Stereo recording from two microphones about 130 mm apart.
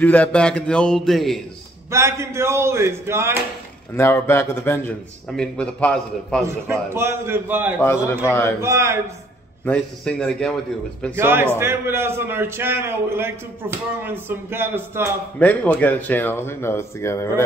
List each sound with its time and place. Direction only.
0.0 s speech: 10° left (ahead or behind)
1.9 s speech: 20° right (ahead or behind)
3.9 s a man's voice: 20° left (ahead or behind)
5.3 s speech: 5° left (ahead or behind)
6.4 s a man's voice: 20° right (ahead or behind)
7.8 s a man's voice: 20° left (ahead or behind)
8.5 s speech: 20° right (ahead or behind)
9.7 s speech: 5° left (ahead or behind)
11.1 s a man's voice: 15° right (ahead or behind)
15.3 s speech: 10° left (ahead or behind)